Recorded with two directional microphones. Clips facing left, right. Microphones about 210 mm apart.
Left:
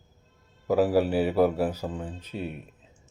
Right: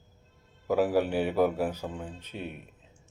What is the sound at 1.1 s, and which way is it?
A man's voice, 5° left (ahead or behind).